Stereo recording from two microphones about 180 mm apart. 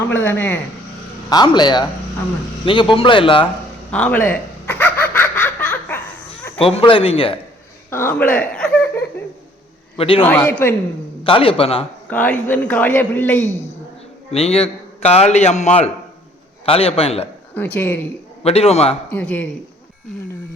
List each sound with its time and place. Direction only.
0.1 s a man's voice: 10° left (ahead or behind)
1.3 s speech: 25° left (ahead or behind)
3.9 s laughter: 10° left (ahead or behind)
6.7 s a man's voice: 30° left (ahead or behind)
7.9 s laughter: 10° left (ahead or behind)
10.0 s a man's voice: 30° left (ahead or behind)
10.2 s a man's voice: 10° left (ahead or behind)
11.2 s a man's voice: 30° left (ahead or behind)
12.1 s a man's voice: 10° left (ahead or behind)
14.3 s a man's voice: 35° left (ahead or behind)
17.5 s a man's voice: 10° left (ahead or behind)
18.4 s a man's voice: 35° left (ahead or behind)
19.1 s a man's voice: 10° left (ahead or behind)